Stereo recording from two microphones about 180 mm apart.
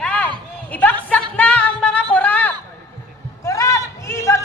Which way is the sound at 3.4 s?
15° left (ahead or behind).